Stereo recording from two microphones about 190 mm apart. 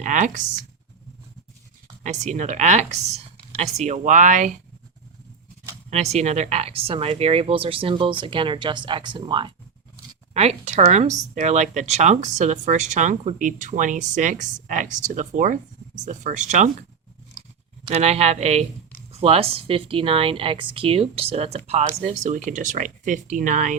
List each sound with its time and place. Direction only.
0.0 s speech: 40° right (ahead or behind)
2.0 s speech: 40° right (ahead or behind)
5.9 s speech: 35° right (ahead or behind)
17.8 s speech: 35° right (ahead or behind)